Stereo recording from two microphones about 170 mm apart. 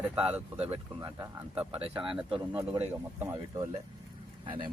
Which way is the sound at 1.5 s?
5° right (ahead or behind).